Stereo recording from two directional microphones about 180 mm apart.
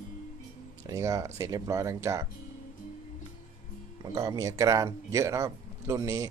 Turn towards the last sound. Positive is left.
turn(degrees=-15)  # may be behind; listen again after turning